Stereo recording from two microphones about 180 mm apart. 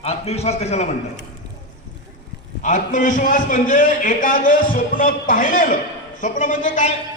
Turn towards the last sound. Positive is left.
turn(degrees=45)  # may be behind; listen again after turning